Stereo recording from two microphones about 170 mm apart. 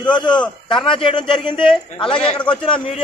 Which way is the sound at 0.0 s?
25° left (ahead or behind).